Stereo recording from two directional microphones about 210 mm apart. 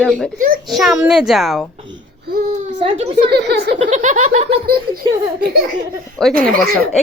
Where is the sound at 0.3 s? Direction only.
40° right (ahead or behind).